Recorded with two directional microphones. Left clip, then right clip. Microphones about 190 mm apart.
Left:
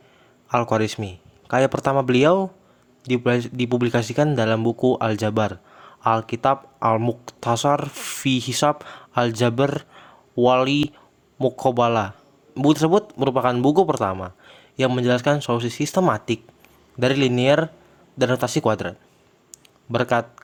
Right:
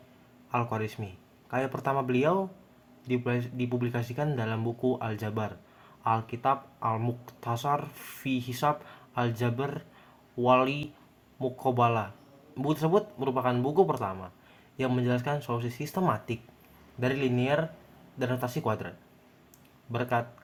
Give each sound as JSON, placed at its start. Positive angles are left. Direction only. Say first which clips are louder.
{"t": 0.5, "sound": "speech", "louder": "left 11 dB", "side_deg": 55}